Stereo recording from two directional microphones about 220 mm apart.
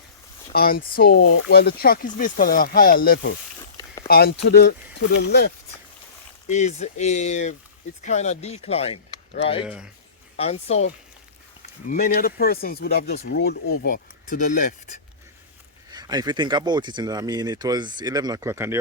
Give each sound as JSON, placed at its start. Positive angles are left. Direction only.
{"t": 0.5, "sound": "speech", "side_deg": 45}
{"t": 6.5, "sound": "speech", "side_deg": 30}
{"t": 9.6, "sound": "speech", "side_deg": -5}
{"t": 10.3, "sound": "speech", "side_deg": 25}
{"t": 11.9, "sound": "speech", "side_deg": 40}
{"t": 15.9, "sound": "speech", "side_deg": -20}